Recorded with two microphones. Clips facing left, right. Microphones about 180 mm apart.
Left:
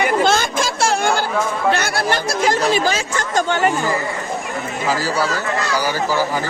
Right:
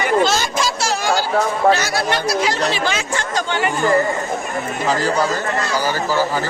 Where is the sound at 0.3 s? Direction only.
55° left (ahead or behind).